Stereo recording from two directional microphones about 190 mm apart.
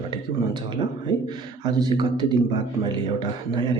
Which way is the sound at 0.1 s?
25° right (ahead or behind).